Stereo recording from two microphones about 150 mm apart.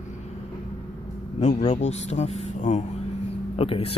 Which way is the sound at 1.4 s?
45° left (ahead or behind).